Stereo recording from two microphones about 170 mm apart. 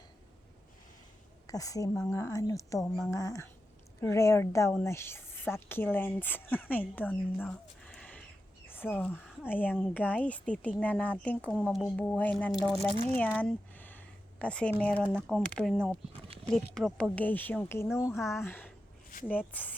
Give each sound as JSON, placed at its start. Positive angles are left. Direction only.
{"t": 1.5, "sound": "a woman's voice", "side_deg": 20}
{"t": 11.9, "sound": "speech", "side_deg": 10}
{"t": 13.1, "sound": "a sound", "side_deg": 10}
{"t": 14.8, "sound": "speech", "side_deg": 10}